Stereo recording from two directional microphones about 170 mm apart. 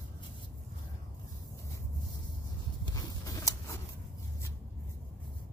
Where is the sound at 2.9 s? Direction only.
20° left (ahead or behind).